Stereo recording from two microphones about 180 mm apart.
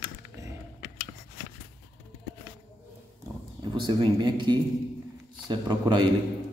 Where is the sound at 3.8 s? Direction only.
25° right (ahead or behind).